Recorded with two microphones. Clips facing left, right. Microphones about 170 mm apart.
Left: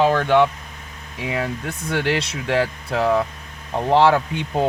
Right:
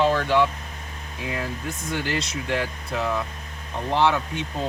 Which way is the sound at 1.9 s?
70° left (ahead or behind).